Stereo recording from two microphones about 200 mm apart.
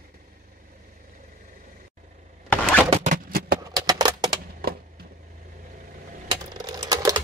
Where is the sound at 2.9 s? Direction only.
35° right (ahead or behind).